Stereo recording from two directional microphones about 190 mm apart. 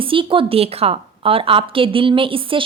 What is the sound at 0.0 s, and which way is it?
A woman's voice, 25° right (ahead or behind).